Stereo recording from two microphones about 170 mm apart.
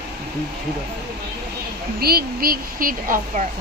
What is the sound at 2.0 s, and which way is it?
A woman's voice, 65° right (ahead or behind).